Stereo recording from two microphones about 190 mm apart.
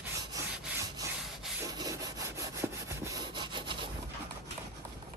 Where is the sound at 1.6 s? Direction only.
20° right (ahead or behind).